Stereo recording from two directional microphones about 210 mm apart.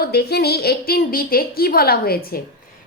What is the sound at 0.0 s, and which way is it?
A woman's voice, 50° left (ahead or behind).